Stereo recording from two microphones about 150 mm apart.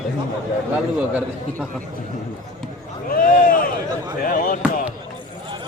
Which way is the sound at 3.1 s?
70° left (ahead or behind).